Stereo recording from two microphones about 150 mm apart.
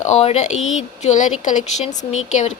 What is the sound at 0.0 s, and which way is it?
A woman's voice, 45° left (ahead or behind).